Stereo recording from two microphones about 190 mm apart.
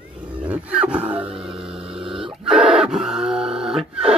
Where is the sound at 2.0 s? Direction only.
25° right (ahead or behind).